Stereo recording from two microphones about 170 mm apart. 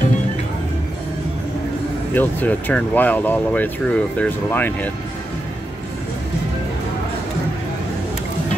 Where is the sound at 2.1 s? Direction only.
10° left (ahead or behind).